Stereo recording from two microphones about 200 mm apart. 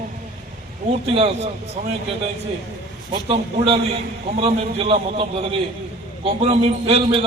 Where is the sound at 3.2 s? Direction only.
30° right (ahead or behind).